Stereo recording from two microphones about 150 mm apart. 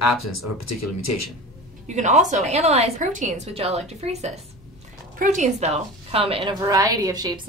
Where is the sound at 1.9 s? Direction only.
50° right (ahead or behind).